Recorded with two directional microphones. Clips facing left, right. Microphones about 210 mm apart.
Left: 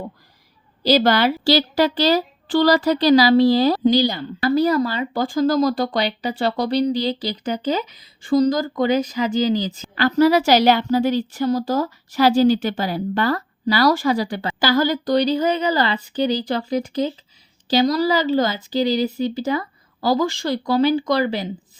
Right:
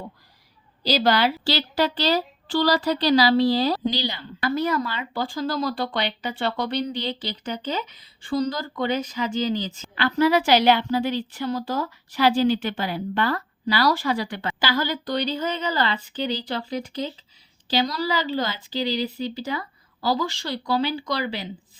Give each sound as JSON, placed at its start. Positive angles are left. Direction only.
{"t": 0.9, "sound": "a woman's voice", "side_deg": 50}